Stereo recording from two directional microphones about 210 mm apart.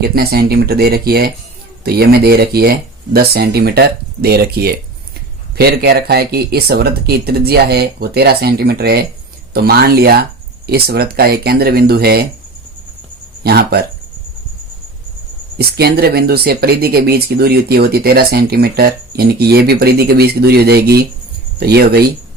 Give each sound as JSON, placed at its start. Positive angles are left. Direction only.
{"t": 0.0, "sound": "speech", "side_deg": -50}
{"t": 13.4, "sound": "speech", "side_deg": -50}
{"t": 15.5, "sound": "speech", "side_deg": -50}